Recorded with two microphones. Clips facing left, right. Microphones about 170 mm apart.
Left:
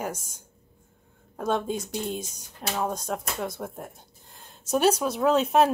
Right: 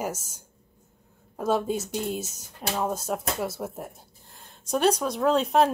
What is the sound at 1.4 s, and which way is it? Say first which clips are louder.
Speech: right 2 dB; 5° right (ahead or behind).